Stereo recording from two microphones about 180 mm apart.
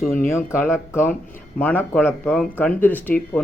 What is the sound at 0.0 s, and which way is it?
Speech, 50° left (ahead or behind).